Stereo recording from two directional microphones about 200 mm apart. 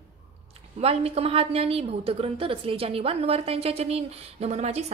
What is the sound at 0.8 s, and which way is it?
A woman's voice, 30° right (ahead or behind).